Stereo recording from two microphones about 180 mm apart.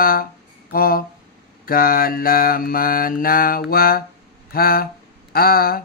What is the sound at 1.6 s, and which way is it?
Mantra, 55° left (ahead or behind).